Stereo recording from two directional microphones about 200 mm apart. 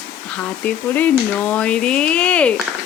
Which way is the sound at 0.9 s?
10° left (ahead or behind).